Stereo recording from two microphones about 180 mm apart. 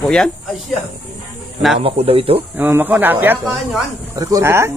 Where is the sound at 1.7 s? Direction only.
35° right (ahead or behind).